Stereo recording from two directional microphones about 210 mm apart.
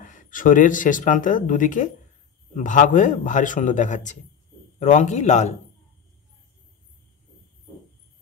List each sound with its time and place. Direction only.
0.0 s speech: 40° left (ahead or behind)